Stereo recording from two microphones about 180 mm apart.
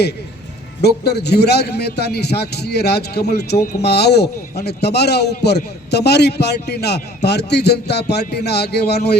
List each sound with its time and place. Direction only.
0.8 s a man's voice: 65° left (ahead or behind)